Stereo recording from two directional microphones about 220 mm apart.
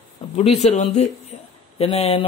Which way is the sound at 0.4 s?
30° left (ahead or behind).